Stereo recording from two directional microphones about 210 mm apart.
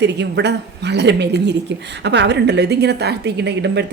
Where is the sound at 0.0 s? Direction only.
55° right (ahead or behind).